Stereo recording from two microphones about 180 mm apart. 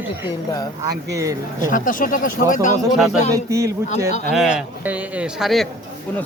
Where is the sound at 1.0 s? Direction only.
15° right (ahead or behind).